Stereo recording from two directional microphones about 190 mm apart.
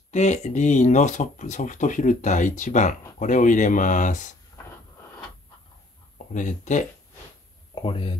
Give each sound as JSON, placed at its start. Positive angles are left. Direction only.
{"t": 0.1, "sound": "speech", "side_deg": 35}
{"t": 6.1, "sound": "speech", "side_deg": 40}
{"t": 7.7, "sound": "speech", "side_deg": 30}